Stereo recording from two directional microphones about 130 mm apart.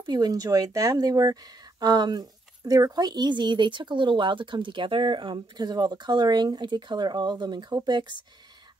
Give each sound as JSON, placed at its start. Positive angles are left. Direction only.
{"t": 0.0, "sound": "speech", "side_deg": -30}